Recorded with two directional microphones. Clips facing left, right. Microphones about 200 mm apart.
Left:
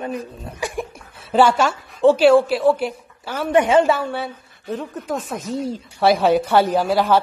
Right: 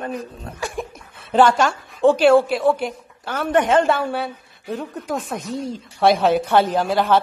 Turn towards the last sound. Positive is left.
turn(degrees=5)  # may be behind; listen again after turning